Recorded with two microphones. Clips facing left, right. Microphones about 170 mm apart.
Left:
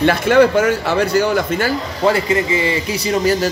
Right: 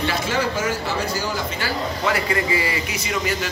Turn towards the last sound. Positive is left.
turn(degrees=25)  # may be behind; listen again after turning